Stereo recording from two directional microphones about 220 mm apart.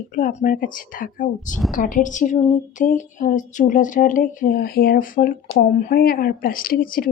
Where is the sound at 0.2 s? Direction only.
35° left (ahead or behind).